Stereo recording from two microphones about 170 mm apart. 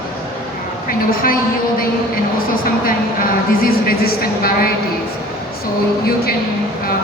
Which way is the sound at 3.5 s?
65° left (ahead or behind).